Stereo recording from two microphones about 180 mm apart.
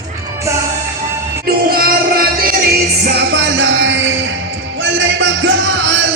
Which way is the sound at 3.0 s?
70° right (ahead or behind).